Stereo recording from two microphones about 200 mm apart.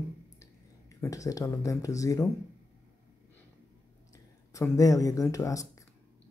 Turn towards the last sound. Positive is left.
turn(degrees=15)  # may be behind; listen again after turning